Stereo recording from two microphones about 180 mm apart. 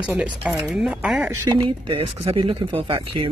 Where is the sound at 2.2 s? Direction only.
30° right (ahead or behind).